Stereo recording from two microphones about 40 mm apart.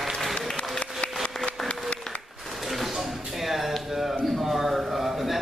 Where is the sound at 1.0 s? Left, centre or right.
Left.